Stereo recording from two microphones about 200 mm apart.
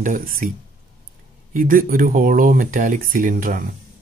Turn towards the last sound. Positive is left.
turn(degrees=-40)  # may be behind; listen again after turning